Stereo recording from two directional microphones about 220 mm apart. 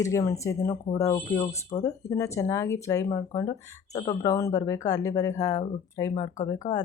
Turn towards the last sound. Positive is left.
turn(degrees=35)  # may be behind; listen again after turning